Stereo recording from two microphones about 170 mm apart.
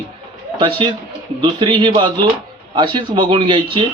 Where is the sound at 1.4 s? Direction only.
30° right (ahead or behind).